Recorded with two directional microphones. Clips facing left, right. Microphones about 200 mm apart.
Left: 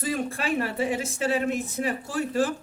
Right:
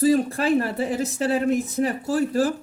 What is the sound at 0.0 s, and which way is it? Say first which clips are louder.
Speech: right 9 dB; 35° right (ahead or behind).